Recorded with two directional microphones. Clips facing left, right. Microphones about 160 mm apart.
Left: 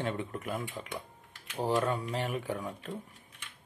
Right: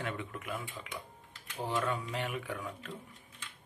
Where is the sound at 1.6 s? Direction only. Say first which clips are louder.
Left 4 dB; 35° left (ahead or behind).